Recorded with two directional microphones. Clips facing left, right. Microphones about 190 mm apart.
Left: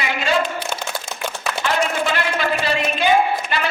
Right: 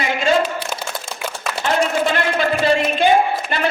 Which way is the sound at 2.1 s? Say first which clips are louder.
Right 3 dB; 50° right (ahead or behind).